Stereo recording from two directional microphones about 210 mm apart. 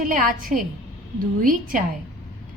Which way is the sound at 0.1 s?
40° right (ahead or behind).